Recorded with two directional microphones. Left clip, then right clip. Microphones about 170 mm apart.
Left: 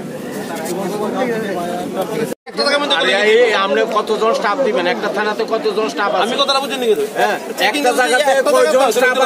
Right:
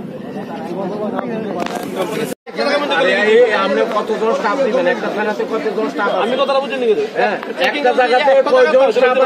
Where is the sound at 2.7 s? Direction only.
30° left (ahead or behind).